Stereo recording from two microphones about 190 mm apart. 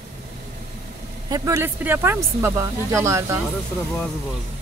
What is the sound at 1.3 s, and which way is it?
Speech, 20° right (ahead or behind).